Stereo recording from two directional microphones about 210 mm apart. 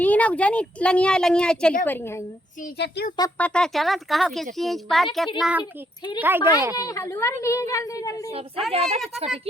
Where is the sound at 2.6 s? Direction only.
45° left (ahead or behind).